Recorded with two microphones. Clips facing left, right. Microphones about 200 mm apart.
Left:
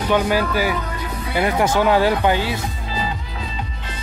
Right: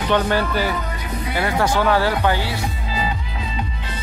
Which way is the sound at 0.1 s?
10° left (ahead or behind).